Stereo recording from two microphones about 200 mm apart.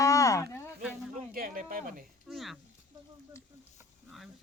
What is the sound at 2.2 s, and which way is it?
Speech, centre (ahead or behind).